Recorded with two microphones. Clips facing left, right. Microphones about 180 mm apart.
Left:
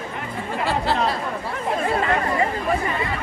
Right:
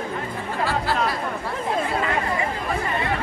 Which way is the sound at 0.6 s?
25° left (ahead or behind).